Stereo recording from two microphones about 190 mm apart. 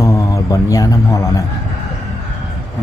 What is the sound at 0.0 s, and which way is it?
A man's voice, 15° left (ahead or behind).